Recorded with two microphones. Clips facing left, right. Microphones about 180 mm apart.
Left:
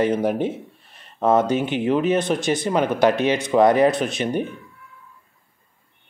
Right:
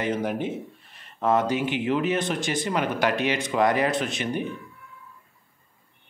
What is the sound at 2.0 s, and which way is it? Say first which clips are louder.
Speech: left 6 dB; 20° left (ahead or behind).